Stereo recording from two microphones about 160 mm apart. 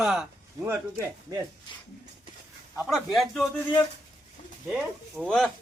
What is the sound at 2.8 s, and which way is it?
Speech, centre (ahead or behind).